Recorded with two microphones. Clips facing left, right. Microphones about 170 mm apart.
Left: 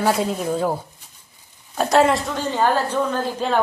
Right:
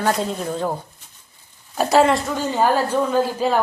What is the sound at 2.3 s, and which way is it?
A woman's voice, 10° right (ahead or behind).